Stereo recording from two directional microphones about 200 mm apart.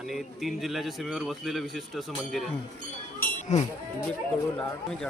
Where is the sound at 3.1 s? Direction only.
35° left (ahead or behind).